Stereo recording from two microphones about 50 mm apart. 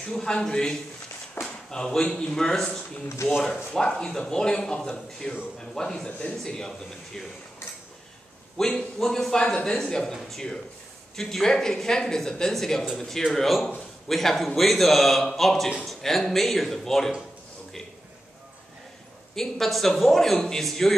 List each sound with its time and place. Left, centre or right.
0.0 s speech: centre
3.2 s speech: left
3.7 s speech: centre
8.5 s speech: centre
9.4 s a man's voice: left
19.3 s a man's voice: centre